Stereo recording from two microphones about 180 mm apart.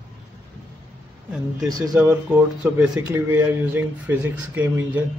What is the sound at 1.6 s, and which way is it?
Speech, 20° right (ahead or behind).